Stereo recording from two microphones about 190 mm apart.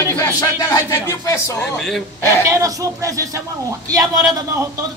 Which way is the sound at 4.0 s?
Centre (ahead or behind).